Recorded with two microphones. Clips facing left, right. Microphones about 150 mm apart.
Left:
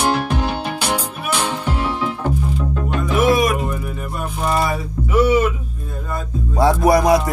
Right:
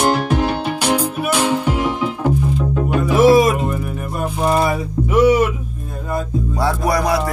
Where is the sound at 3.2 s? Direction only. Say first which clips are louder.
Right 5 dB; 30° right (ahead or behind).